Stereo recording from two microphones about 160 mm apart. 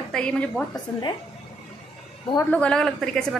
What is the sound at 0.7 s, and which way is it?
Speech, 25° left (ahead or behind).